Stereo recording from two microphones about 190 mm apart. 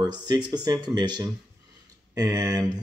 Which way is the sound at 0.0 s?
20° right (ahead or behind).